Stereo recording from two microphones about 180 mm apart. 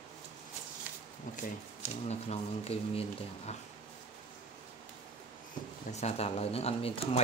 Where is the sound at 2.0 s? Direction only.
35° left (ahead or behind).